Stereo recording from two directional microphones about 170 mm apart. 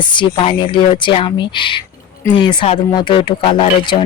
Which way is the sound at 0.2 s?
30° left (ahead or behind).